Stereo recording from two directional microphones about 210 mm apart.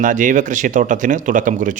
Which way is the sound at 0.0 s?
40° right (ahead or behind).